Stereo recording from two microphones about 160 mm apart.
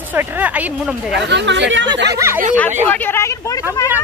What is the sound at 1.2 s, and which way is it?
Speech, 90° right.